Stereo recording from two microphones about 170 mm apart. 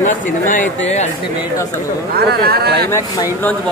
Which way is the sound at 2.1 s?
65° right (ahead or behind).